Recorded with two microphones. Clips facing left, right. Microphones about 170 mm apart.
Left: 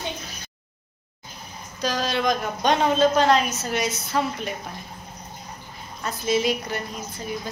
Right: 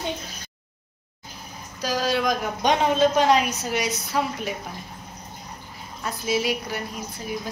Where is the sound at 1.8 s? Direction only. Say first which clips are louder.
Right 1 dB; 5° right (ahead or behind).